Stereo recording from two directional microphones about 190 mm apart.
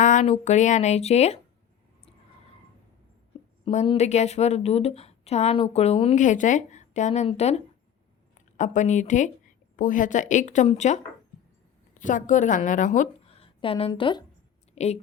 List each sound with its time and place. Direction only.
0.0 s a woman's voice: 40° left (ahead or behind)
3.7 s a woman's voice: 35° left (ahead or behind)
14.8 s a woman's voice: 35° left (ahead or behind)